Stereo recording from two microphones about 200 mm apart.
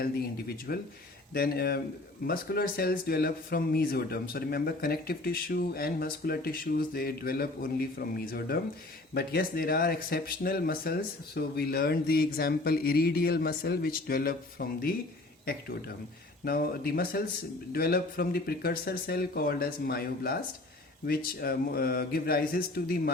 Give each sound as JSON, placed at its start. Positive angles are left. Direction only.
{"t": 0.0, "sound": "speech", "side_deg": 50}
{"t": 16.4, "sound": "speech", "side_deg": 50}